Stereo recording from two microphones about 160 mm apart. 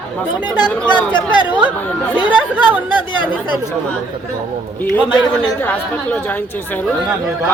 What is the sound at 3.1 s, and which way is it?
Speech, 30° left (ahead or behind).